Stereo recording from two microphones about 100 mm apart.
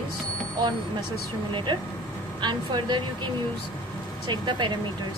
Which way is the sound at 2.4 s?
50° right (ahead or behind).